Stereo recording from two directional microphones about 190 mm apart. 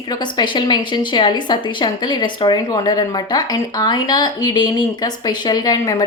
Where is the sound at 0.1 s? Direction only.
25° left (ahead or behind).